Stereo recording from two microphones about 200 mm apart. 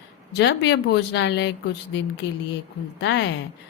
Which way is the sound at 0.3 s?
60° left (ahead or behind).